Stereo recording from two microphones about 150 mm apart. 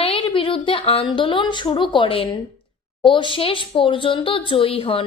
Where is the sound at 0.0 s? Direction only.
35° left (ahead or behind).